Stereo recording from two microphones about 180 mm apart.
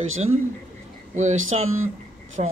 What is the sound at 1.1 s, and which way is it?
Speech, 40° right (ahead or behind).